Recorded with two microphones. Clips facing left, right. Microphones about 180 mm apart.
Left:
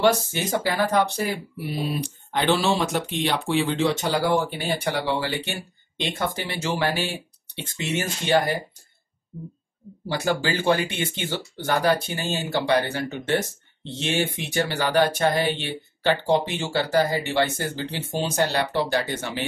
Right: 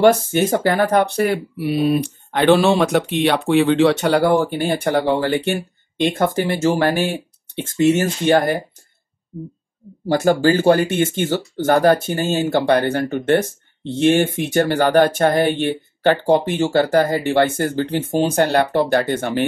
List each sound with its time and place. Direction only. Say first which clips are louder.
0.0 s speech: right 7 dB; 55° right (ahead or behind)
4.3 s speech: right 6 dB; 45° right (ahead or behind)
10.0 s speech: right 10 dB; 45° right (ahead or behind)